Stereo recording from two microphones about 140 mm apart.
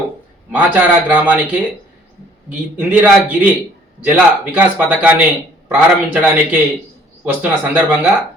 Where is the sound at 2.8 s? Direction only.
10° right (ahead or behind).